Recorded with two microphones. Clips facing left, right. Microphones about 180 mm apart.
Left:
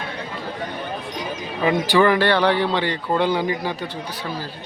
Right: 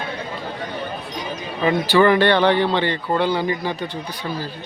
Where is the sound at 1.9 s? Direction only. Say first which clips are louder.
Right 3 dB; 10° left (ahead or behind).